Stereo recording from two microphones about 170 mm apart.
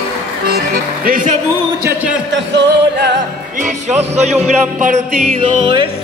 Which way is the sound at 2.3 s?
90° right.